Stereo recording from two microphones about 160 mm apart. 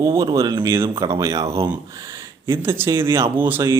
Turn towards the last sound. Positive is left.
turn(degrees=-15)  # may be behind; listen again after turning